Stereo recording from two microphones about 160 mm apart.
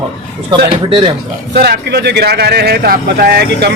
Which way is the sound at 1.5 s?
90° right.